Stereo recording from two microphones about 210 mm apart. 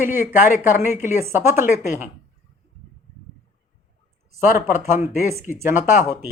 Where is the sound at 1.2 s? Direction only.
10° right (ahead or behind).